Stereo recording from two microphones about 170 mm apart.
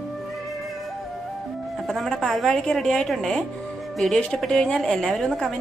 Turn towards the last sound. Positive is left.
turn(degrees=5)  # may be behind; listen again after turning